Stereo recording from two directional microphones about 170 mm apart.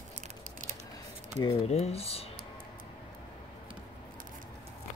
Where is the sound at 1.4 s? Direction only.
40° left (ahead or behind).